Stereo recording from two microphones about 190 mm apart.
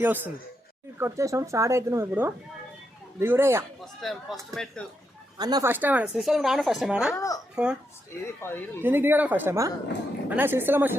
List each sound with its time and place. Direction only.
0.0 s speech: 10° right (ahead or behind)
3.8 s a woman's voice: centre (ahead or behind)
5.4 s a woman's voice: 20° right (ahead or behind); by 7.1 s centre (ahead or behind)
7.1 s speech: 15° left (ahead or behind)
7.5 s speech: 5° right (ahead or behind)
8.2 s speech: 15° left (ahead or behind)
8.8 s speech: 10° right (ahead or behind)